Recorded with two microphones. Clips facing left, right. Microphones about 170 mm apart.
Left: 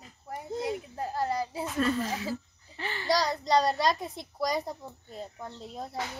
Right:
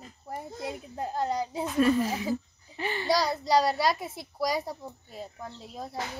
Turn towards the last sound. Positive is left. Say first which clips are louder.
# even
turn(degrees=0)  # may be behind; listen again after turning